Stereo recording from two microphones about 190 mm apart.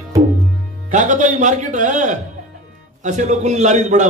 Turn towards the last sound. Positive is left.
turn(degrees=-40)  # may be behind; listen again after turning